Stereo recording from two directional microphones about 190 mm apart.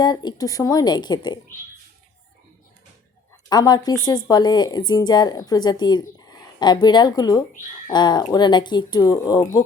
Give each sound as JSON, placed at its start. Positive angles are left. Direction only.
{"t": 0.0, "sound": "speech", "side_deg": 20}
{"t": 3.5, "sound": "speech", "side_deg": 20}